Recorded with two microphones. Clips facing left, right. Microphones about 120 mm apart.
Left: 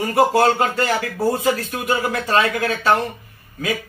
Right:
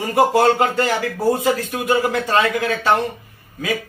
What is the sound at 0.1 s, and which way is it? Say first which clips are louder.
Speech: right 1 dB; 15° right (ahead or behind).